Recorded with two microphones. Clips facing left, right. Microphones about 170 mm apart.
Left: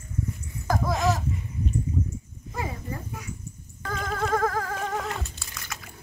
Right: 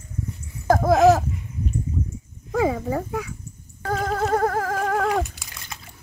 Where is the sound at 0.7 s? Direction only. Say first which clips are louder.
Right 10 dB; 55° right (ahead or behind).